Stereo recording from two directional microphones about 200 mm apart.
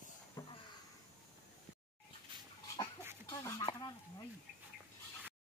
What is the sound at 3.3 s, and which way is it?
Speech, 20° left (ahead or behind).